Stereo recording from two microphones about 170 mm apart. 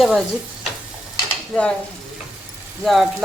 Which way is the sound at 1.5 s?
5° left (ahead or behind).